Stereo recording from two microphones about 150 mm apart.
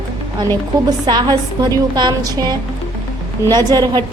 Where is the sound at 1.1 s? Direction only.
30° right (ahead or behind).